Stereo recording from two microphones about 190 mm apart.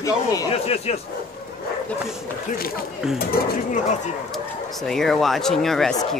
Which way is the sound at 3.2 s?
50° left (ahead or behind).